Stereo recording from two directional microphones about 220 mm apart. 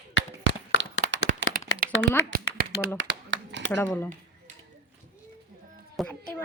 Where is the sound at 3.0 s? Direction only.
55° right (ahead or behind).